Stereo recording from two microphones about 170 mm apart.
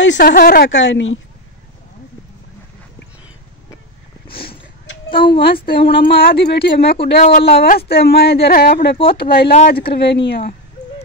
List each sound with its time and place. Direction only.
0.0 s speech: 80° left
4.3 s a sound: 65° left (ahead or behind)
5.1 s a woman's voice: 30° left (ahead or behind)
5.4 s speech: 65° left (ahead or behind)